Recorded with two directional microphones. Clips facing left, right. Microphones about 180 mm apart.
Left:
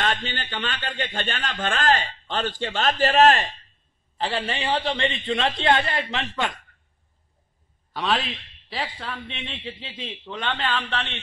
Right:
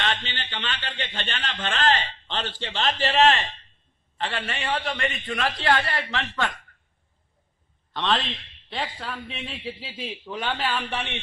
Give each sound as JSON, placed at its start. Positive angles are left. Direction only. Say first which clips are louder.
{"t": 0.0, "sound": "a man's voice", "louder": "left 3 dB", "side_deg": 45}
{"t": 4.2, "sound": "a man's voice", "louder": "left 3 dB", "side_deg": 30}
{"t": 7.9, "sound": "a man's voice", "louder": "even", "side_deg": 5}